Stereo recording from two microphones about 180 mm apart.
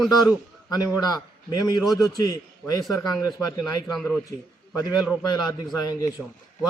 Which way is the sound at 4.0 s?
Centre (ahead or behind).